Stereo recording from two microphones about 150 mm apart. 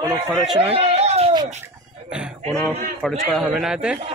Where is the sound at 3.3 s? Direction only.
Centre (ahead or behind).